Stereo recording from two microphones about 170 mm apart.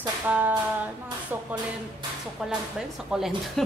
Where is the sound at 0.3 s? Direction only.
10° right (ahead or behind).